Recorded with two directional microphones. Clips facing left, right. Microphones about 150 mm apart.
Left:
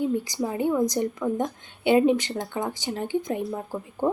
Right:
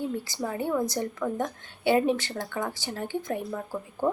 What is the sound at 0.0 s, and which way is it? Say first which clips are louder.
A woman's voice: left 5 dB; 15° left (ahead or behind).